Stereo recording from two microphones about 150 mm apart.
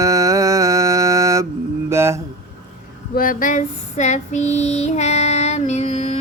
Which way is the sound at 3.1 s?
65° left (ahead or behind).